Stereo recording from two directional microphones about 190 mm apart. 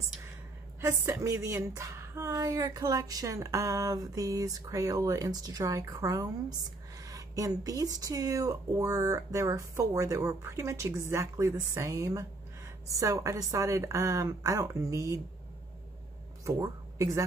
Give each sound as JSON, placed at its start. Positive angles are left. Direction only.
{"t": 0.7, "sound": "speech", "side_deg": -15}
{"t": 16.4, "sound": "speech", "side_deg": -15}